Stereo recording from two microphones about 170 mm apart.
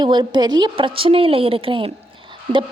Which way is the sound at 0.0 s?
25° right (ahead or behind).